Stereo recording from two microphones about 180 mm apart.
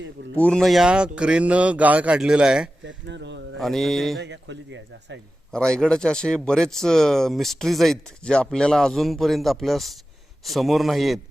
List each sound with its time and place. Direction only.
0.3 s speech: 5° left (ahead or behind)
2.8 s speech: 75° right (ahead or behind)
3.6 s speech: centre (ahead or behind)
4.2 s speech: 80° right
5.5 s speech: 5° left (ahead or behind)